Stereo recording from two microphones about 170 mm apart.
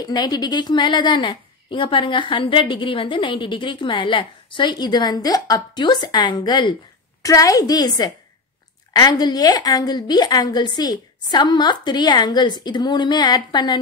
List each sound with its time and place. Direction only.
0.0 s a woman's voice: 25° left (ahead or behind)
8.9 s a woman's voice: 25° left (ahead or behind)